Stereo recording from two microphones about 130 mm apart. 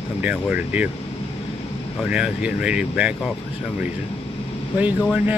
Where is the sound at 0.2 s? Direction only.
10° right (ahead or behind).